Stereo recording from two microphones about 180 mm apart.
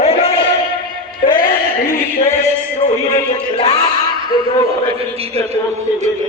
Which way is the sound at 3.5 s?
35° left (ahead or behind).